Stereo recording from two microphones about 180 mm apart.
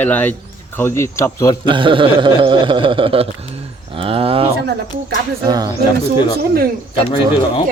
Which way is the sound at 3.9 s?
30° right (ahead or behind).